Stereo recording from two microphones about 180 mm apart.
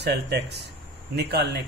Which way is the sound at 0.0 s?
70° right (ahead or behind).